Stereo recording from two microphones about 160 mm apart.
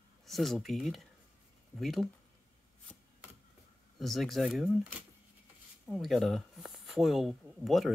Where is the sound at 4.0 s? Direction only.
Centre (ahead or behind).